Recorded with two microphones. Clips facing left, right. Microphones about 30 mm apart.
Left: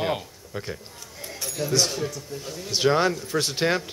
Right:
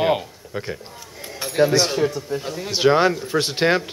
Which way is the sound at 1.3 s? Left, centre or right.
Right.